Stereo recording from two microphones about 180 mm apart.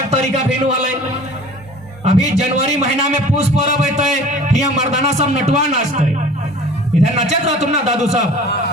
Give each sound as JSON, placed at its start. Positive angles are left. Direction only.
{"t": 0.1, "sound": "a man's voice", "side_deg": -40}
{"t": 2.0, "sound": "a man's voice", "side_deg": -40}